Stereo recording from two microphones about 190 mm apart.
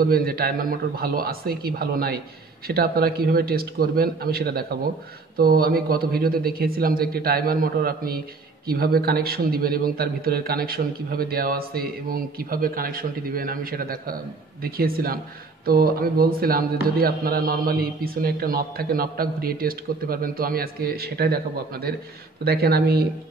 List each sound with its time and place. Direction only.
0.0 s a man's voice: 50° right (ahead or behind)
22.4 s speech: 55° right (ahead or behind)